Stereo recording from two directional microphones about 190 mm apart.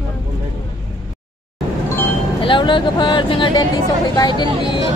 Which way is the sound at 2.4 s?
25° left (ahead or behind).